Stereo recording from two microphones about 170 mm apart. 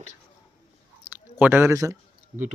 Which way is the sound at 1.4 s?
15° right (ahead or behind).